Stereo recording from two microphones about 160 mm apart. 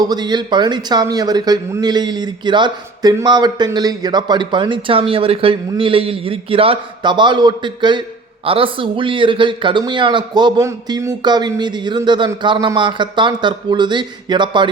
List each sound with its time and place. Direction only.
0.0 s a man's voice: 25° right (ahead or behind)